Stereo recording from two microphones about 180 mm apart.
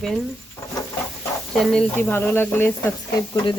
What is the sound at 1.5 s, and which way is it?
Speech, 5° left (ahead or behind).